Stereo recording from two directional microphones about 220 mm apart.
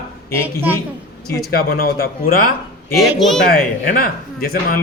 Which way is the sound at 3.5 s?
40° left (ahead or behind).